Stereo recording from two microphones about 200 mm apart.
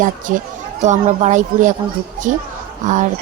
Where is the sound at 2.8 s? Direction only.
35° right (ahead or behind).